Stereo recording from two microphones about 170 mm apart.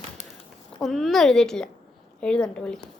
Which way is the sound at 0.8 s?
Centre (ahead or behind).